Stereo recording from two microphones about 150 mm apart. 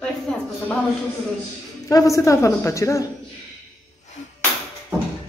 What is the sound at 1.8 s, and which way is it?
Speech, 20° left (ahead or behind).